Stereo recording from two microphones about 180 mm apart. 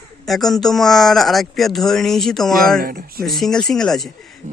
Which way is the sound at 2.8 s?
55° right (ahead or behind).